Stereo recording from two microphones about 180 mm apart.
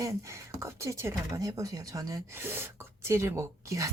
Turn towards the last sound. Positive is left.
turn(degrees=-15)  # may be behind; listen again after turning